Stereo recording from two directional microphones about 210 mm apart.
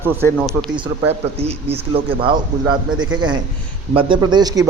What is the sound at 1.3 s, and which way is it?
A man's voice, 30° right (ahead or behind).